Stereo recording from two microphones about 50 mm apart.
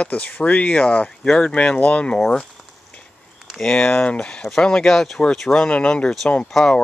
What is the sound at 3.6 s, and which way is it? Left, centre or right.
Speech, centre.